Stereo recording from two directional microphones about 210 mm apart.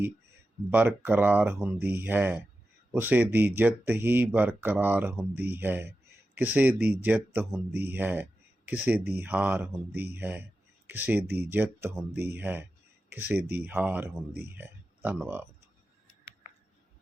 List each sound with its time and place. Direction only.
0.7 s speech: 10° right (ahead or behind)
12.1 s speech: 50° right (ahead or behind)
12.4 s speech: 10° right (ahead or behind)